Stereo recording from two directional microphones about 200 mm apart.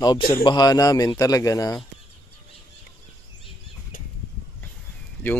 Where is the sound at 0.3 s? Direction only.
20° left (ahead or behind).